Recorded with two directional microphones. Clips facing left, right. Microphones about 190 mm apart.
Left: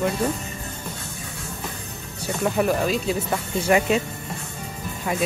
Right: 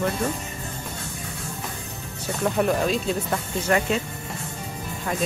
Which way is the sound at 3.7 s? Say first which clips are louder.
Left 3 dB; 15° left (ahead or behind).